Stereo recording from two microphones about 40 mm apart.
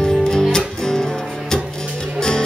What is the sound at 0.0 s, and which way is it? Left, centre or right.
Music, centre.